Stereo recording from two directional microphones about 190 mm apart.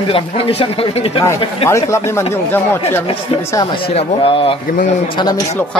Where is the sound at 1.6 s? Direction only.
15° left (ahead or behind).